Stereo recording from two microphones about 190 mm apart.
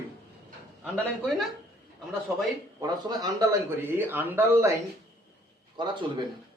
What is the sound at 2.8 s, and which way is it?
A man's voice, 20° right (ahead or behind).